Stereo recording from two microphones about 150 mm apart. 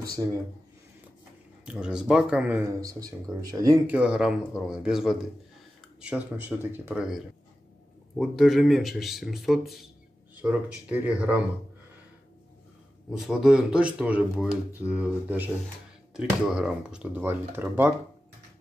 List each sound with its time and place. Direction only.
0.2 s speech: 25° right (ahead or behind)
1.7 s speech: 5° right (ahead or behind)
2.8 s speech: 25° right (ahead or behind)
3.8 s speech: 10° right (ahead or behind)
8.2 s speech: centre (ahead or behind)
10.9 s speech: 10° right (ahead or behind)
13.1 s speech: 5° right (ahead or behind)